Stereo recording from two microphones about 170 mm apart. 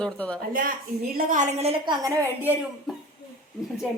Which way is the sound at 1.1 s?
50° right (ahead or behind).